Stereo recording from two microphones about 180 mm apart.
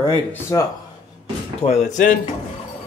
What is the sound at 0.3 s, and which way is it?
Speech, 15° left (ahead or behind).